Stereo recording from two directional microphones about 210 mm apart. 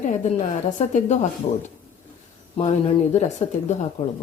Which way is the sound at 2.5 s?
30° left (ahead or behind).